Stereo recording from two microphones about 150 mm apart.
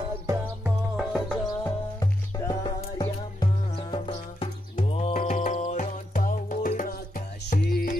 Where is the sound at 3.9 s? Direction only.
35° left (ahead or behind).